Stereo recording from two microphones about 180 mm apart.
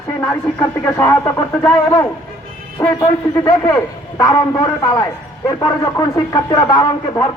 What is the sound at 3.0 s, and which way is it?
Speech, 20° left (ahead or behind).